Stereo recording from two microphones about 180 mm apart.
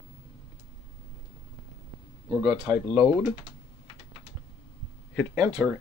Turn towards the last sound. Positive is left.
turn(degrees=0)  # may be behind; listen again after turning